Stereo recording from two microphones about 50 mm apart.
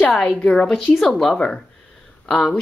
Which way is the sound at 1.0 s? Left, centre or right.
Centre.